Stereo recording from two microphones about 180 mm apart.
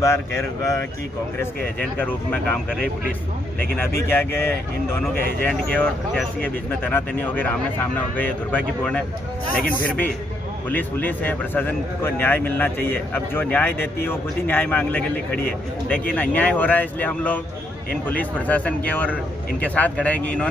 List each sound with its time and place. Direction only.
0.0 s a man's voice: 15° left (ahead or behind)